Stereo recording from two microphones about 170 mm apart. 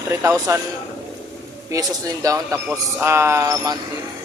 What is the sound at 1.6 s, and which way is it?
A man's voice, 20° right (ahead or behind).